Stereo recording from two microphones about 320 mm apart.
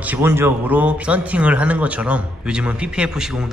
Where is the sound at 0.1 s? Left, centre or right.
Centre.